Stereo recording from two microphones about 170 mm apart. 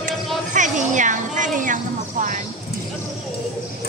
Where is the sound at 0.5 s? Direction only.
45° right (ahead or behind).